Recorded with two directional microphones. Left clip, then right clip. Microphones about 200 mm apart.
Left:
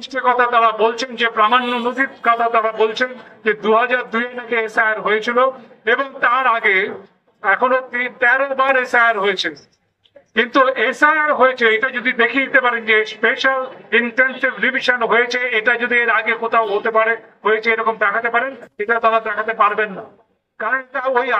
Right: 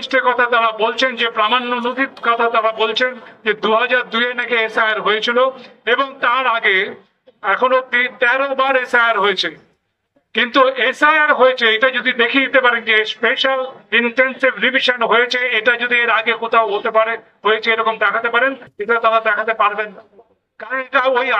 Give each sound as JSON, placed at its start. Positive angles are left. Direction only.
{"t": 0.0, "sound": "a man's voice", "side_deg": -15}